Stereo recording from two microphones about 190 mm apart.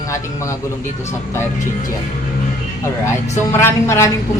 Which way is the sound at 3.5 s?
15° left (ahead or behind).